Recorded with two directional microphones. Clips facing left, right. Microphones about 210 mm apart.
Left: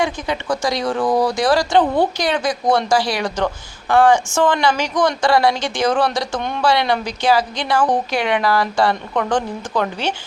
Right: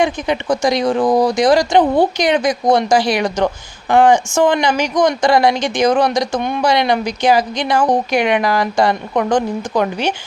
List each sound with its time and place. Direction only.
0.0 s speech: 20° right (ahead or behind)